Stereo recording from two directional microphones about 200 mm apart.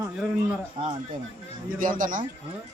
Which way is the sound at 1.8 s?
40° right (ahead or behind).